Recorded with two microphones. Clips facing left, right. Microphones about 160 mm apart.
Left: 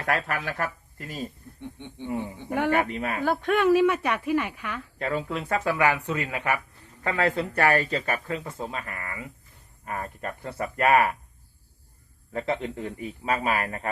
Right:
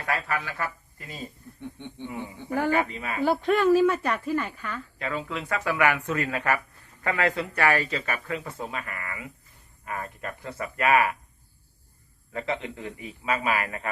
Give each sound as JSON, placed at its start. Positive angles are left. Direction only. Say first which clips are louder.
{"t": 0.0, "sound": "speech", "louder": "left 2 dB", "side_deg": 50}
{"t": 1.8, "sound": "speech", "louder": "right 1 dB", "side_deg": 15}
{"t": 2.5, "sound": "speech", "louder": "even", "side_deg": 65}
{"t": 3.5, "sound": "speech", "louder": "even", "side_deg": 5}
{"t": 4.9, "sound": "speech", "louder": "left 4 dB", "side_deg": 45}
{"t": 6.0, "sound": "speech", "louder": "right 1 dB", "side_deg": 15}
{"t": 7.0, "sound": "speech", "louder": "left 1 dB", "side_deg": 30}
{"t": 12.3, "sound": "speech", "louder": "left 2 dB", "side_deg": 40}